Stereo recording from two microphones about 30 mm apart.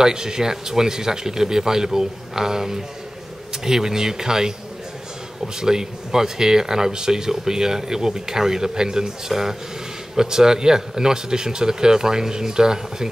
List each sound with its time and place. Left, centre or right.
0.0 s speech: right
5.6 s speech: right